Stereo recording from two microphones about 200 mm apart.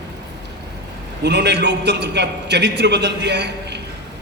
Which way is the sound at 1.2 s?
60° right (ahead or behind).